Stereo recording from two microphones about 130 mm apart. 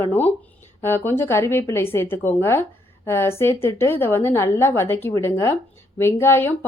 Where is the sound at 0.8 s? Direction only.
15° left (ahead or behind).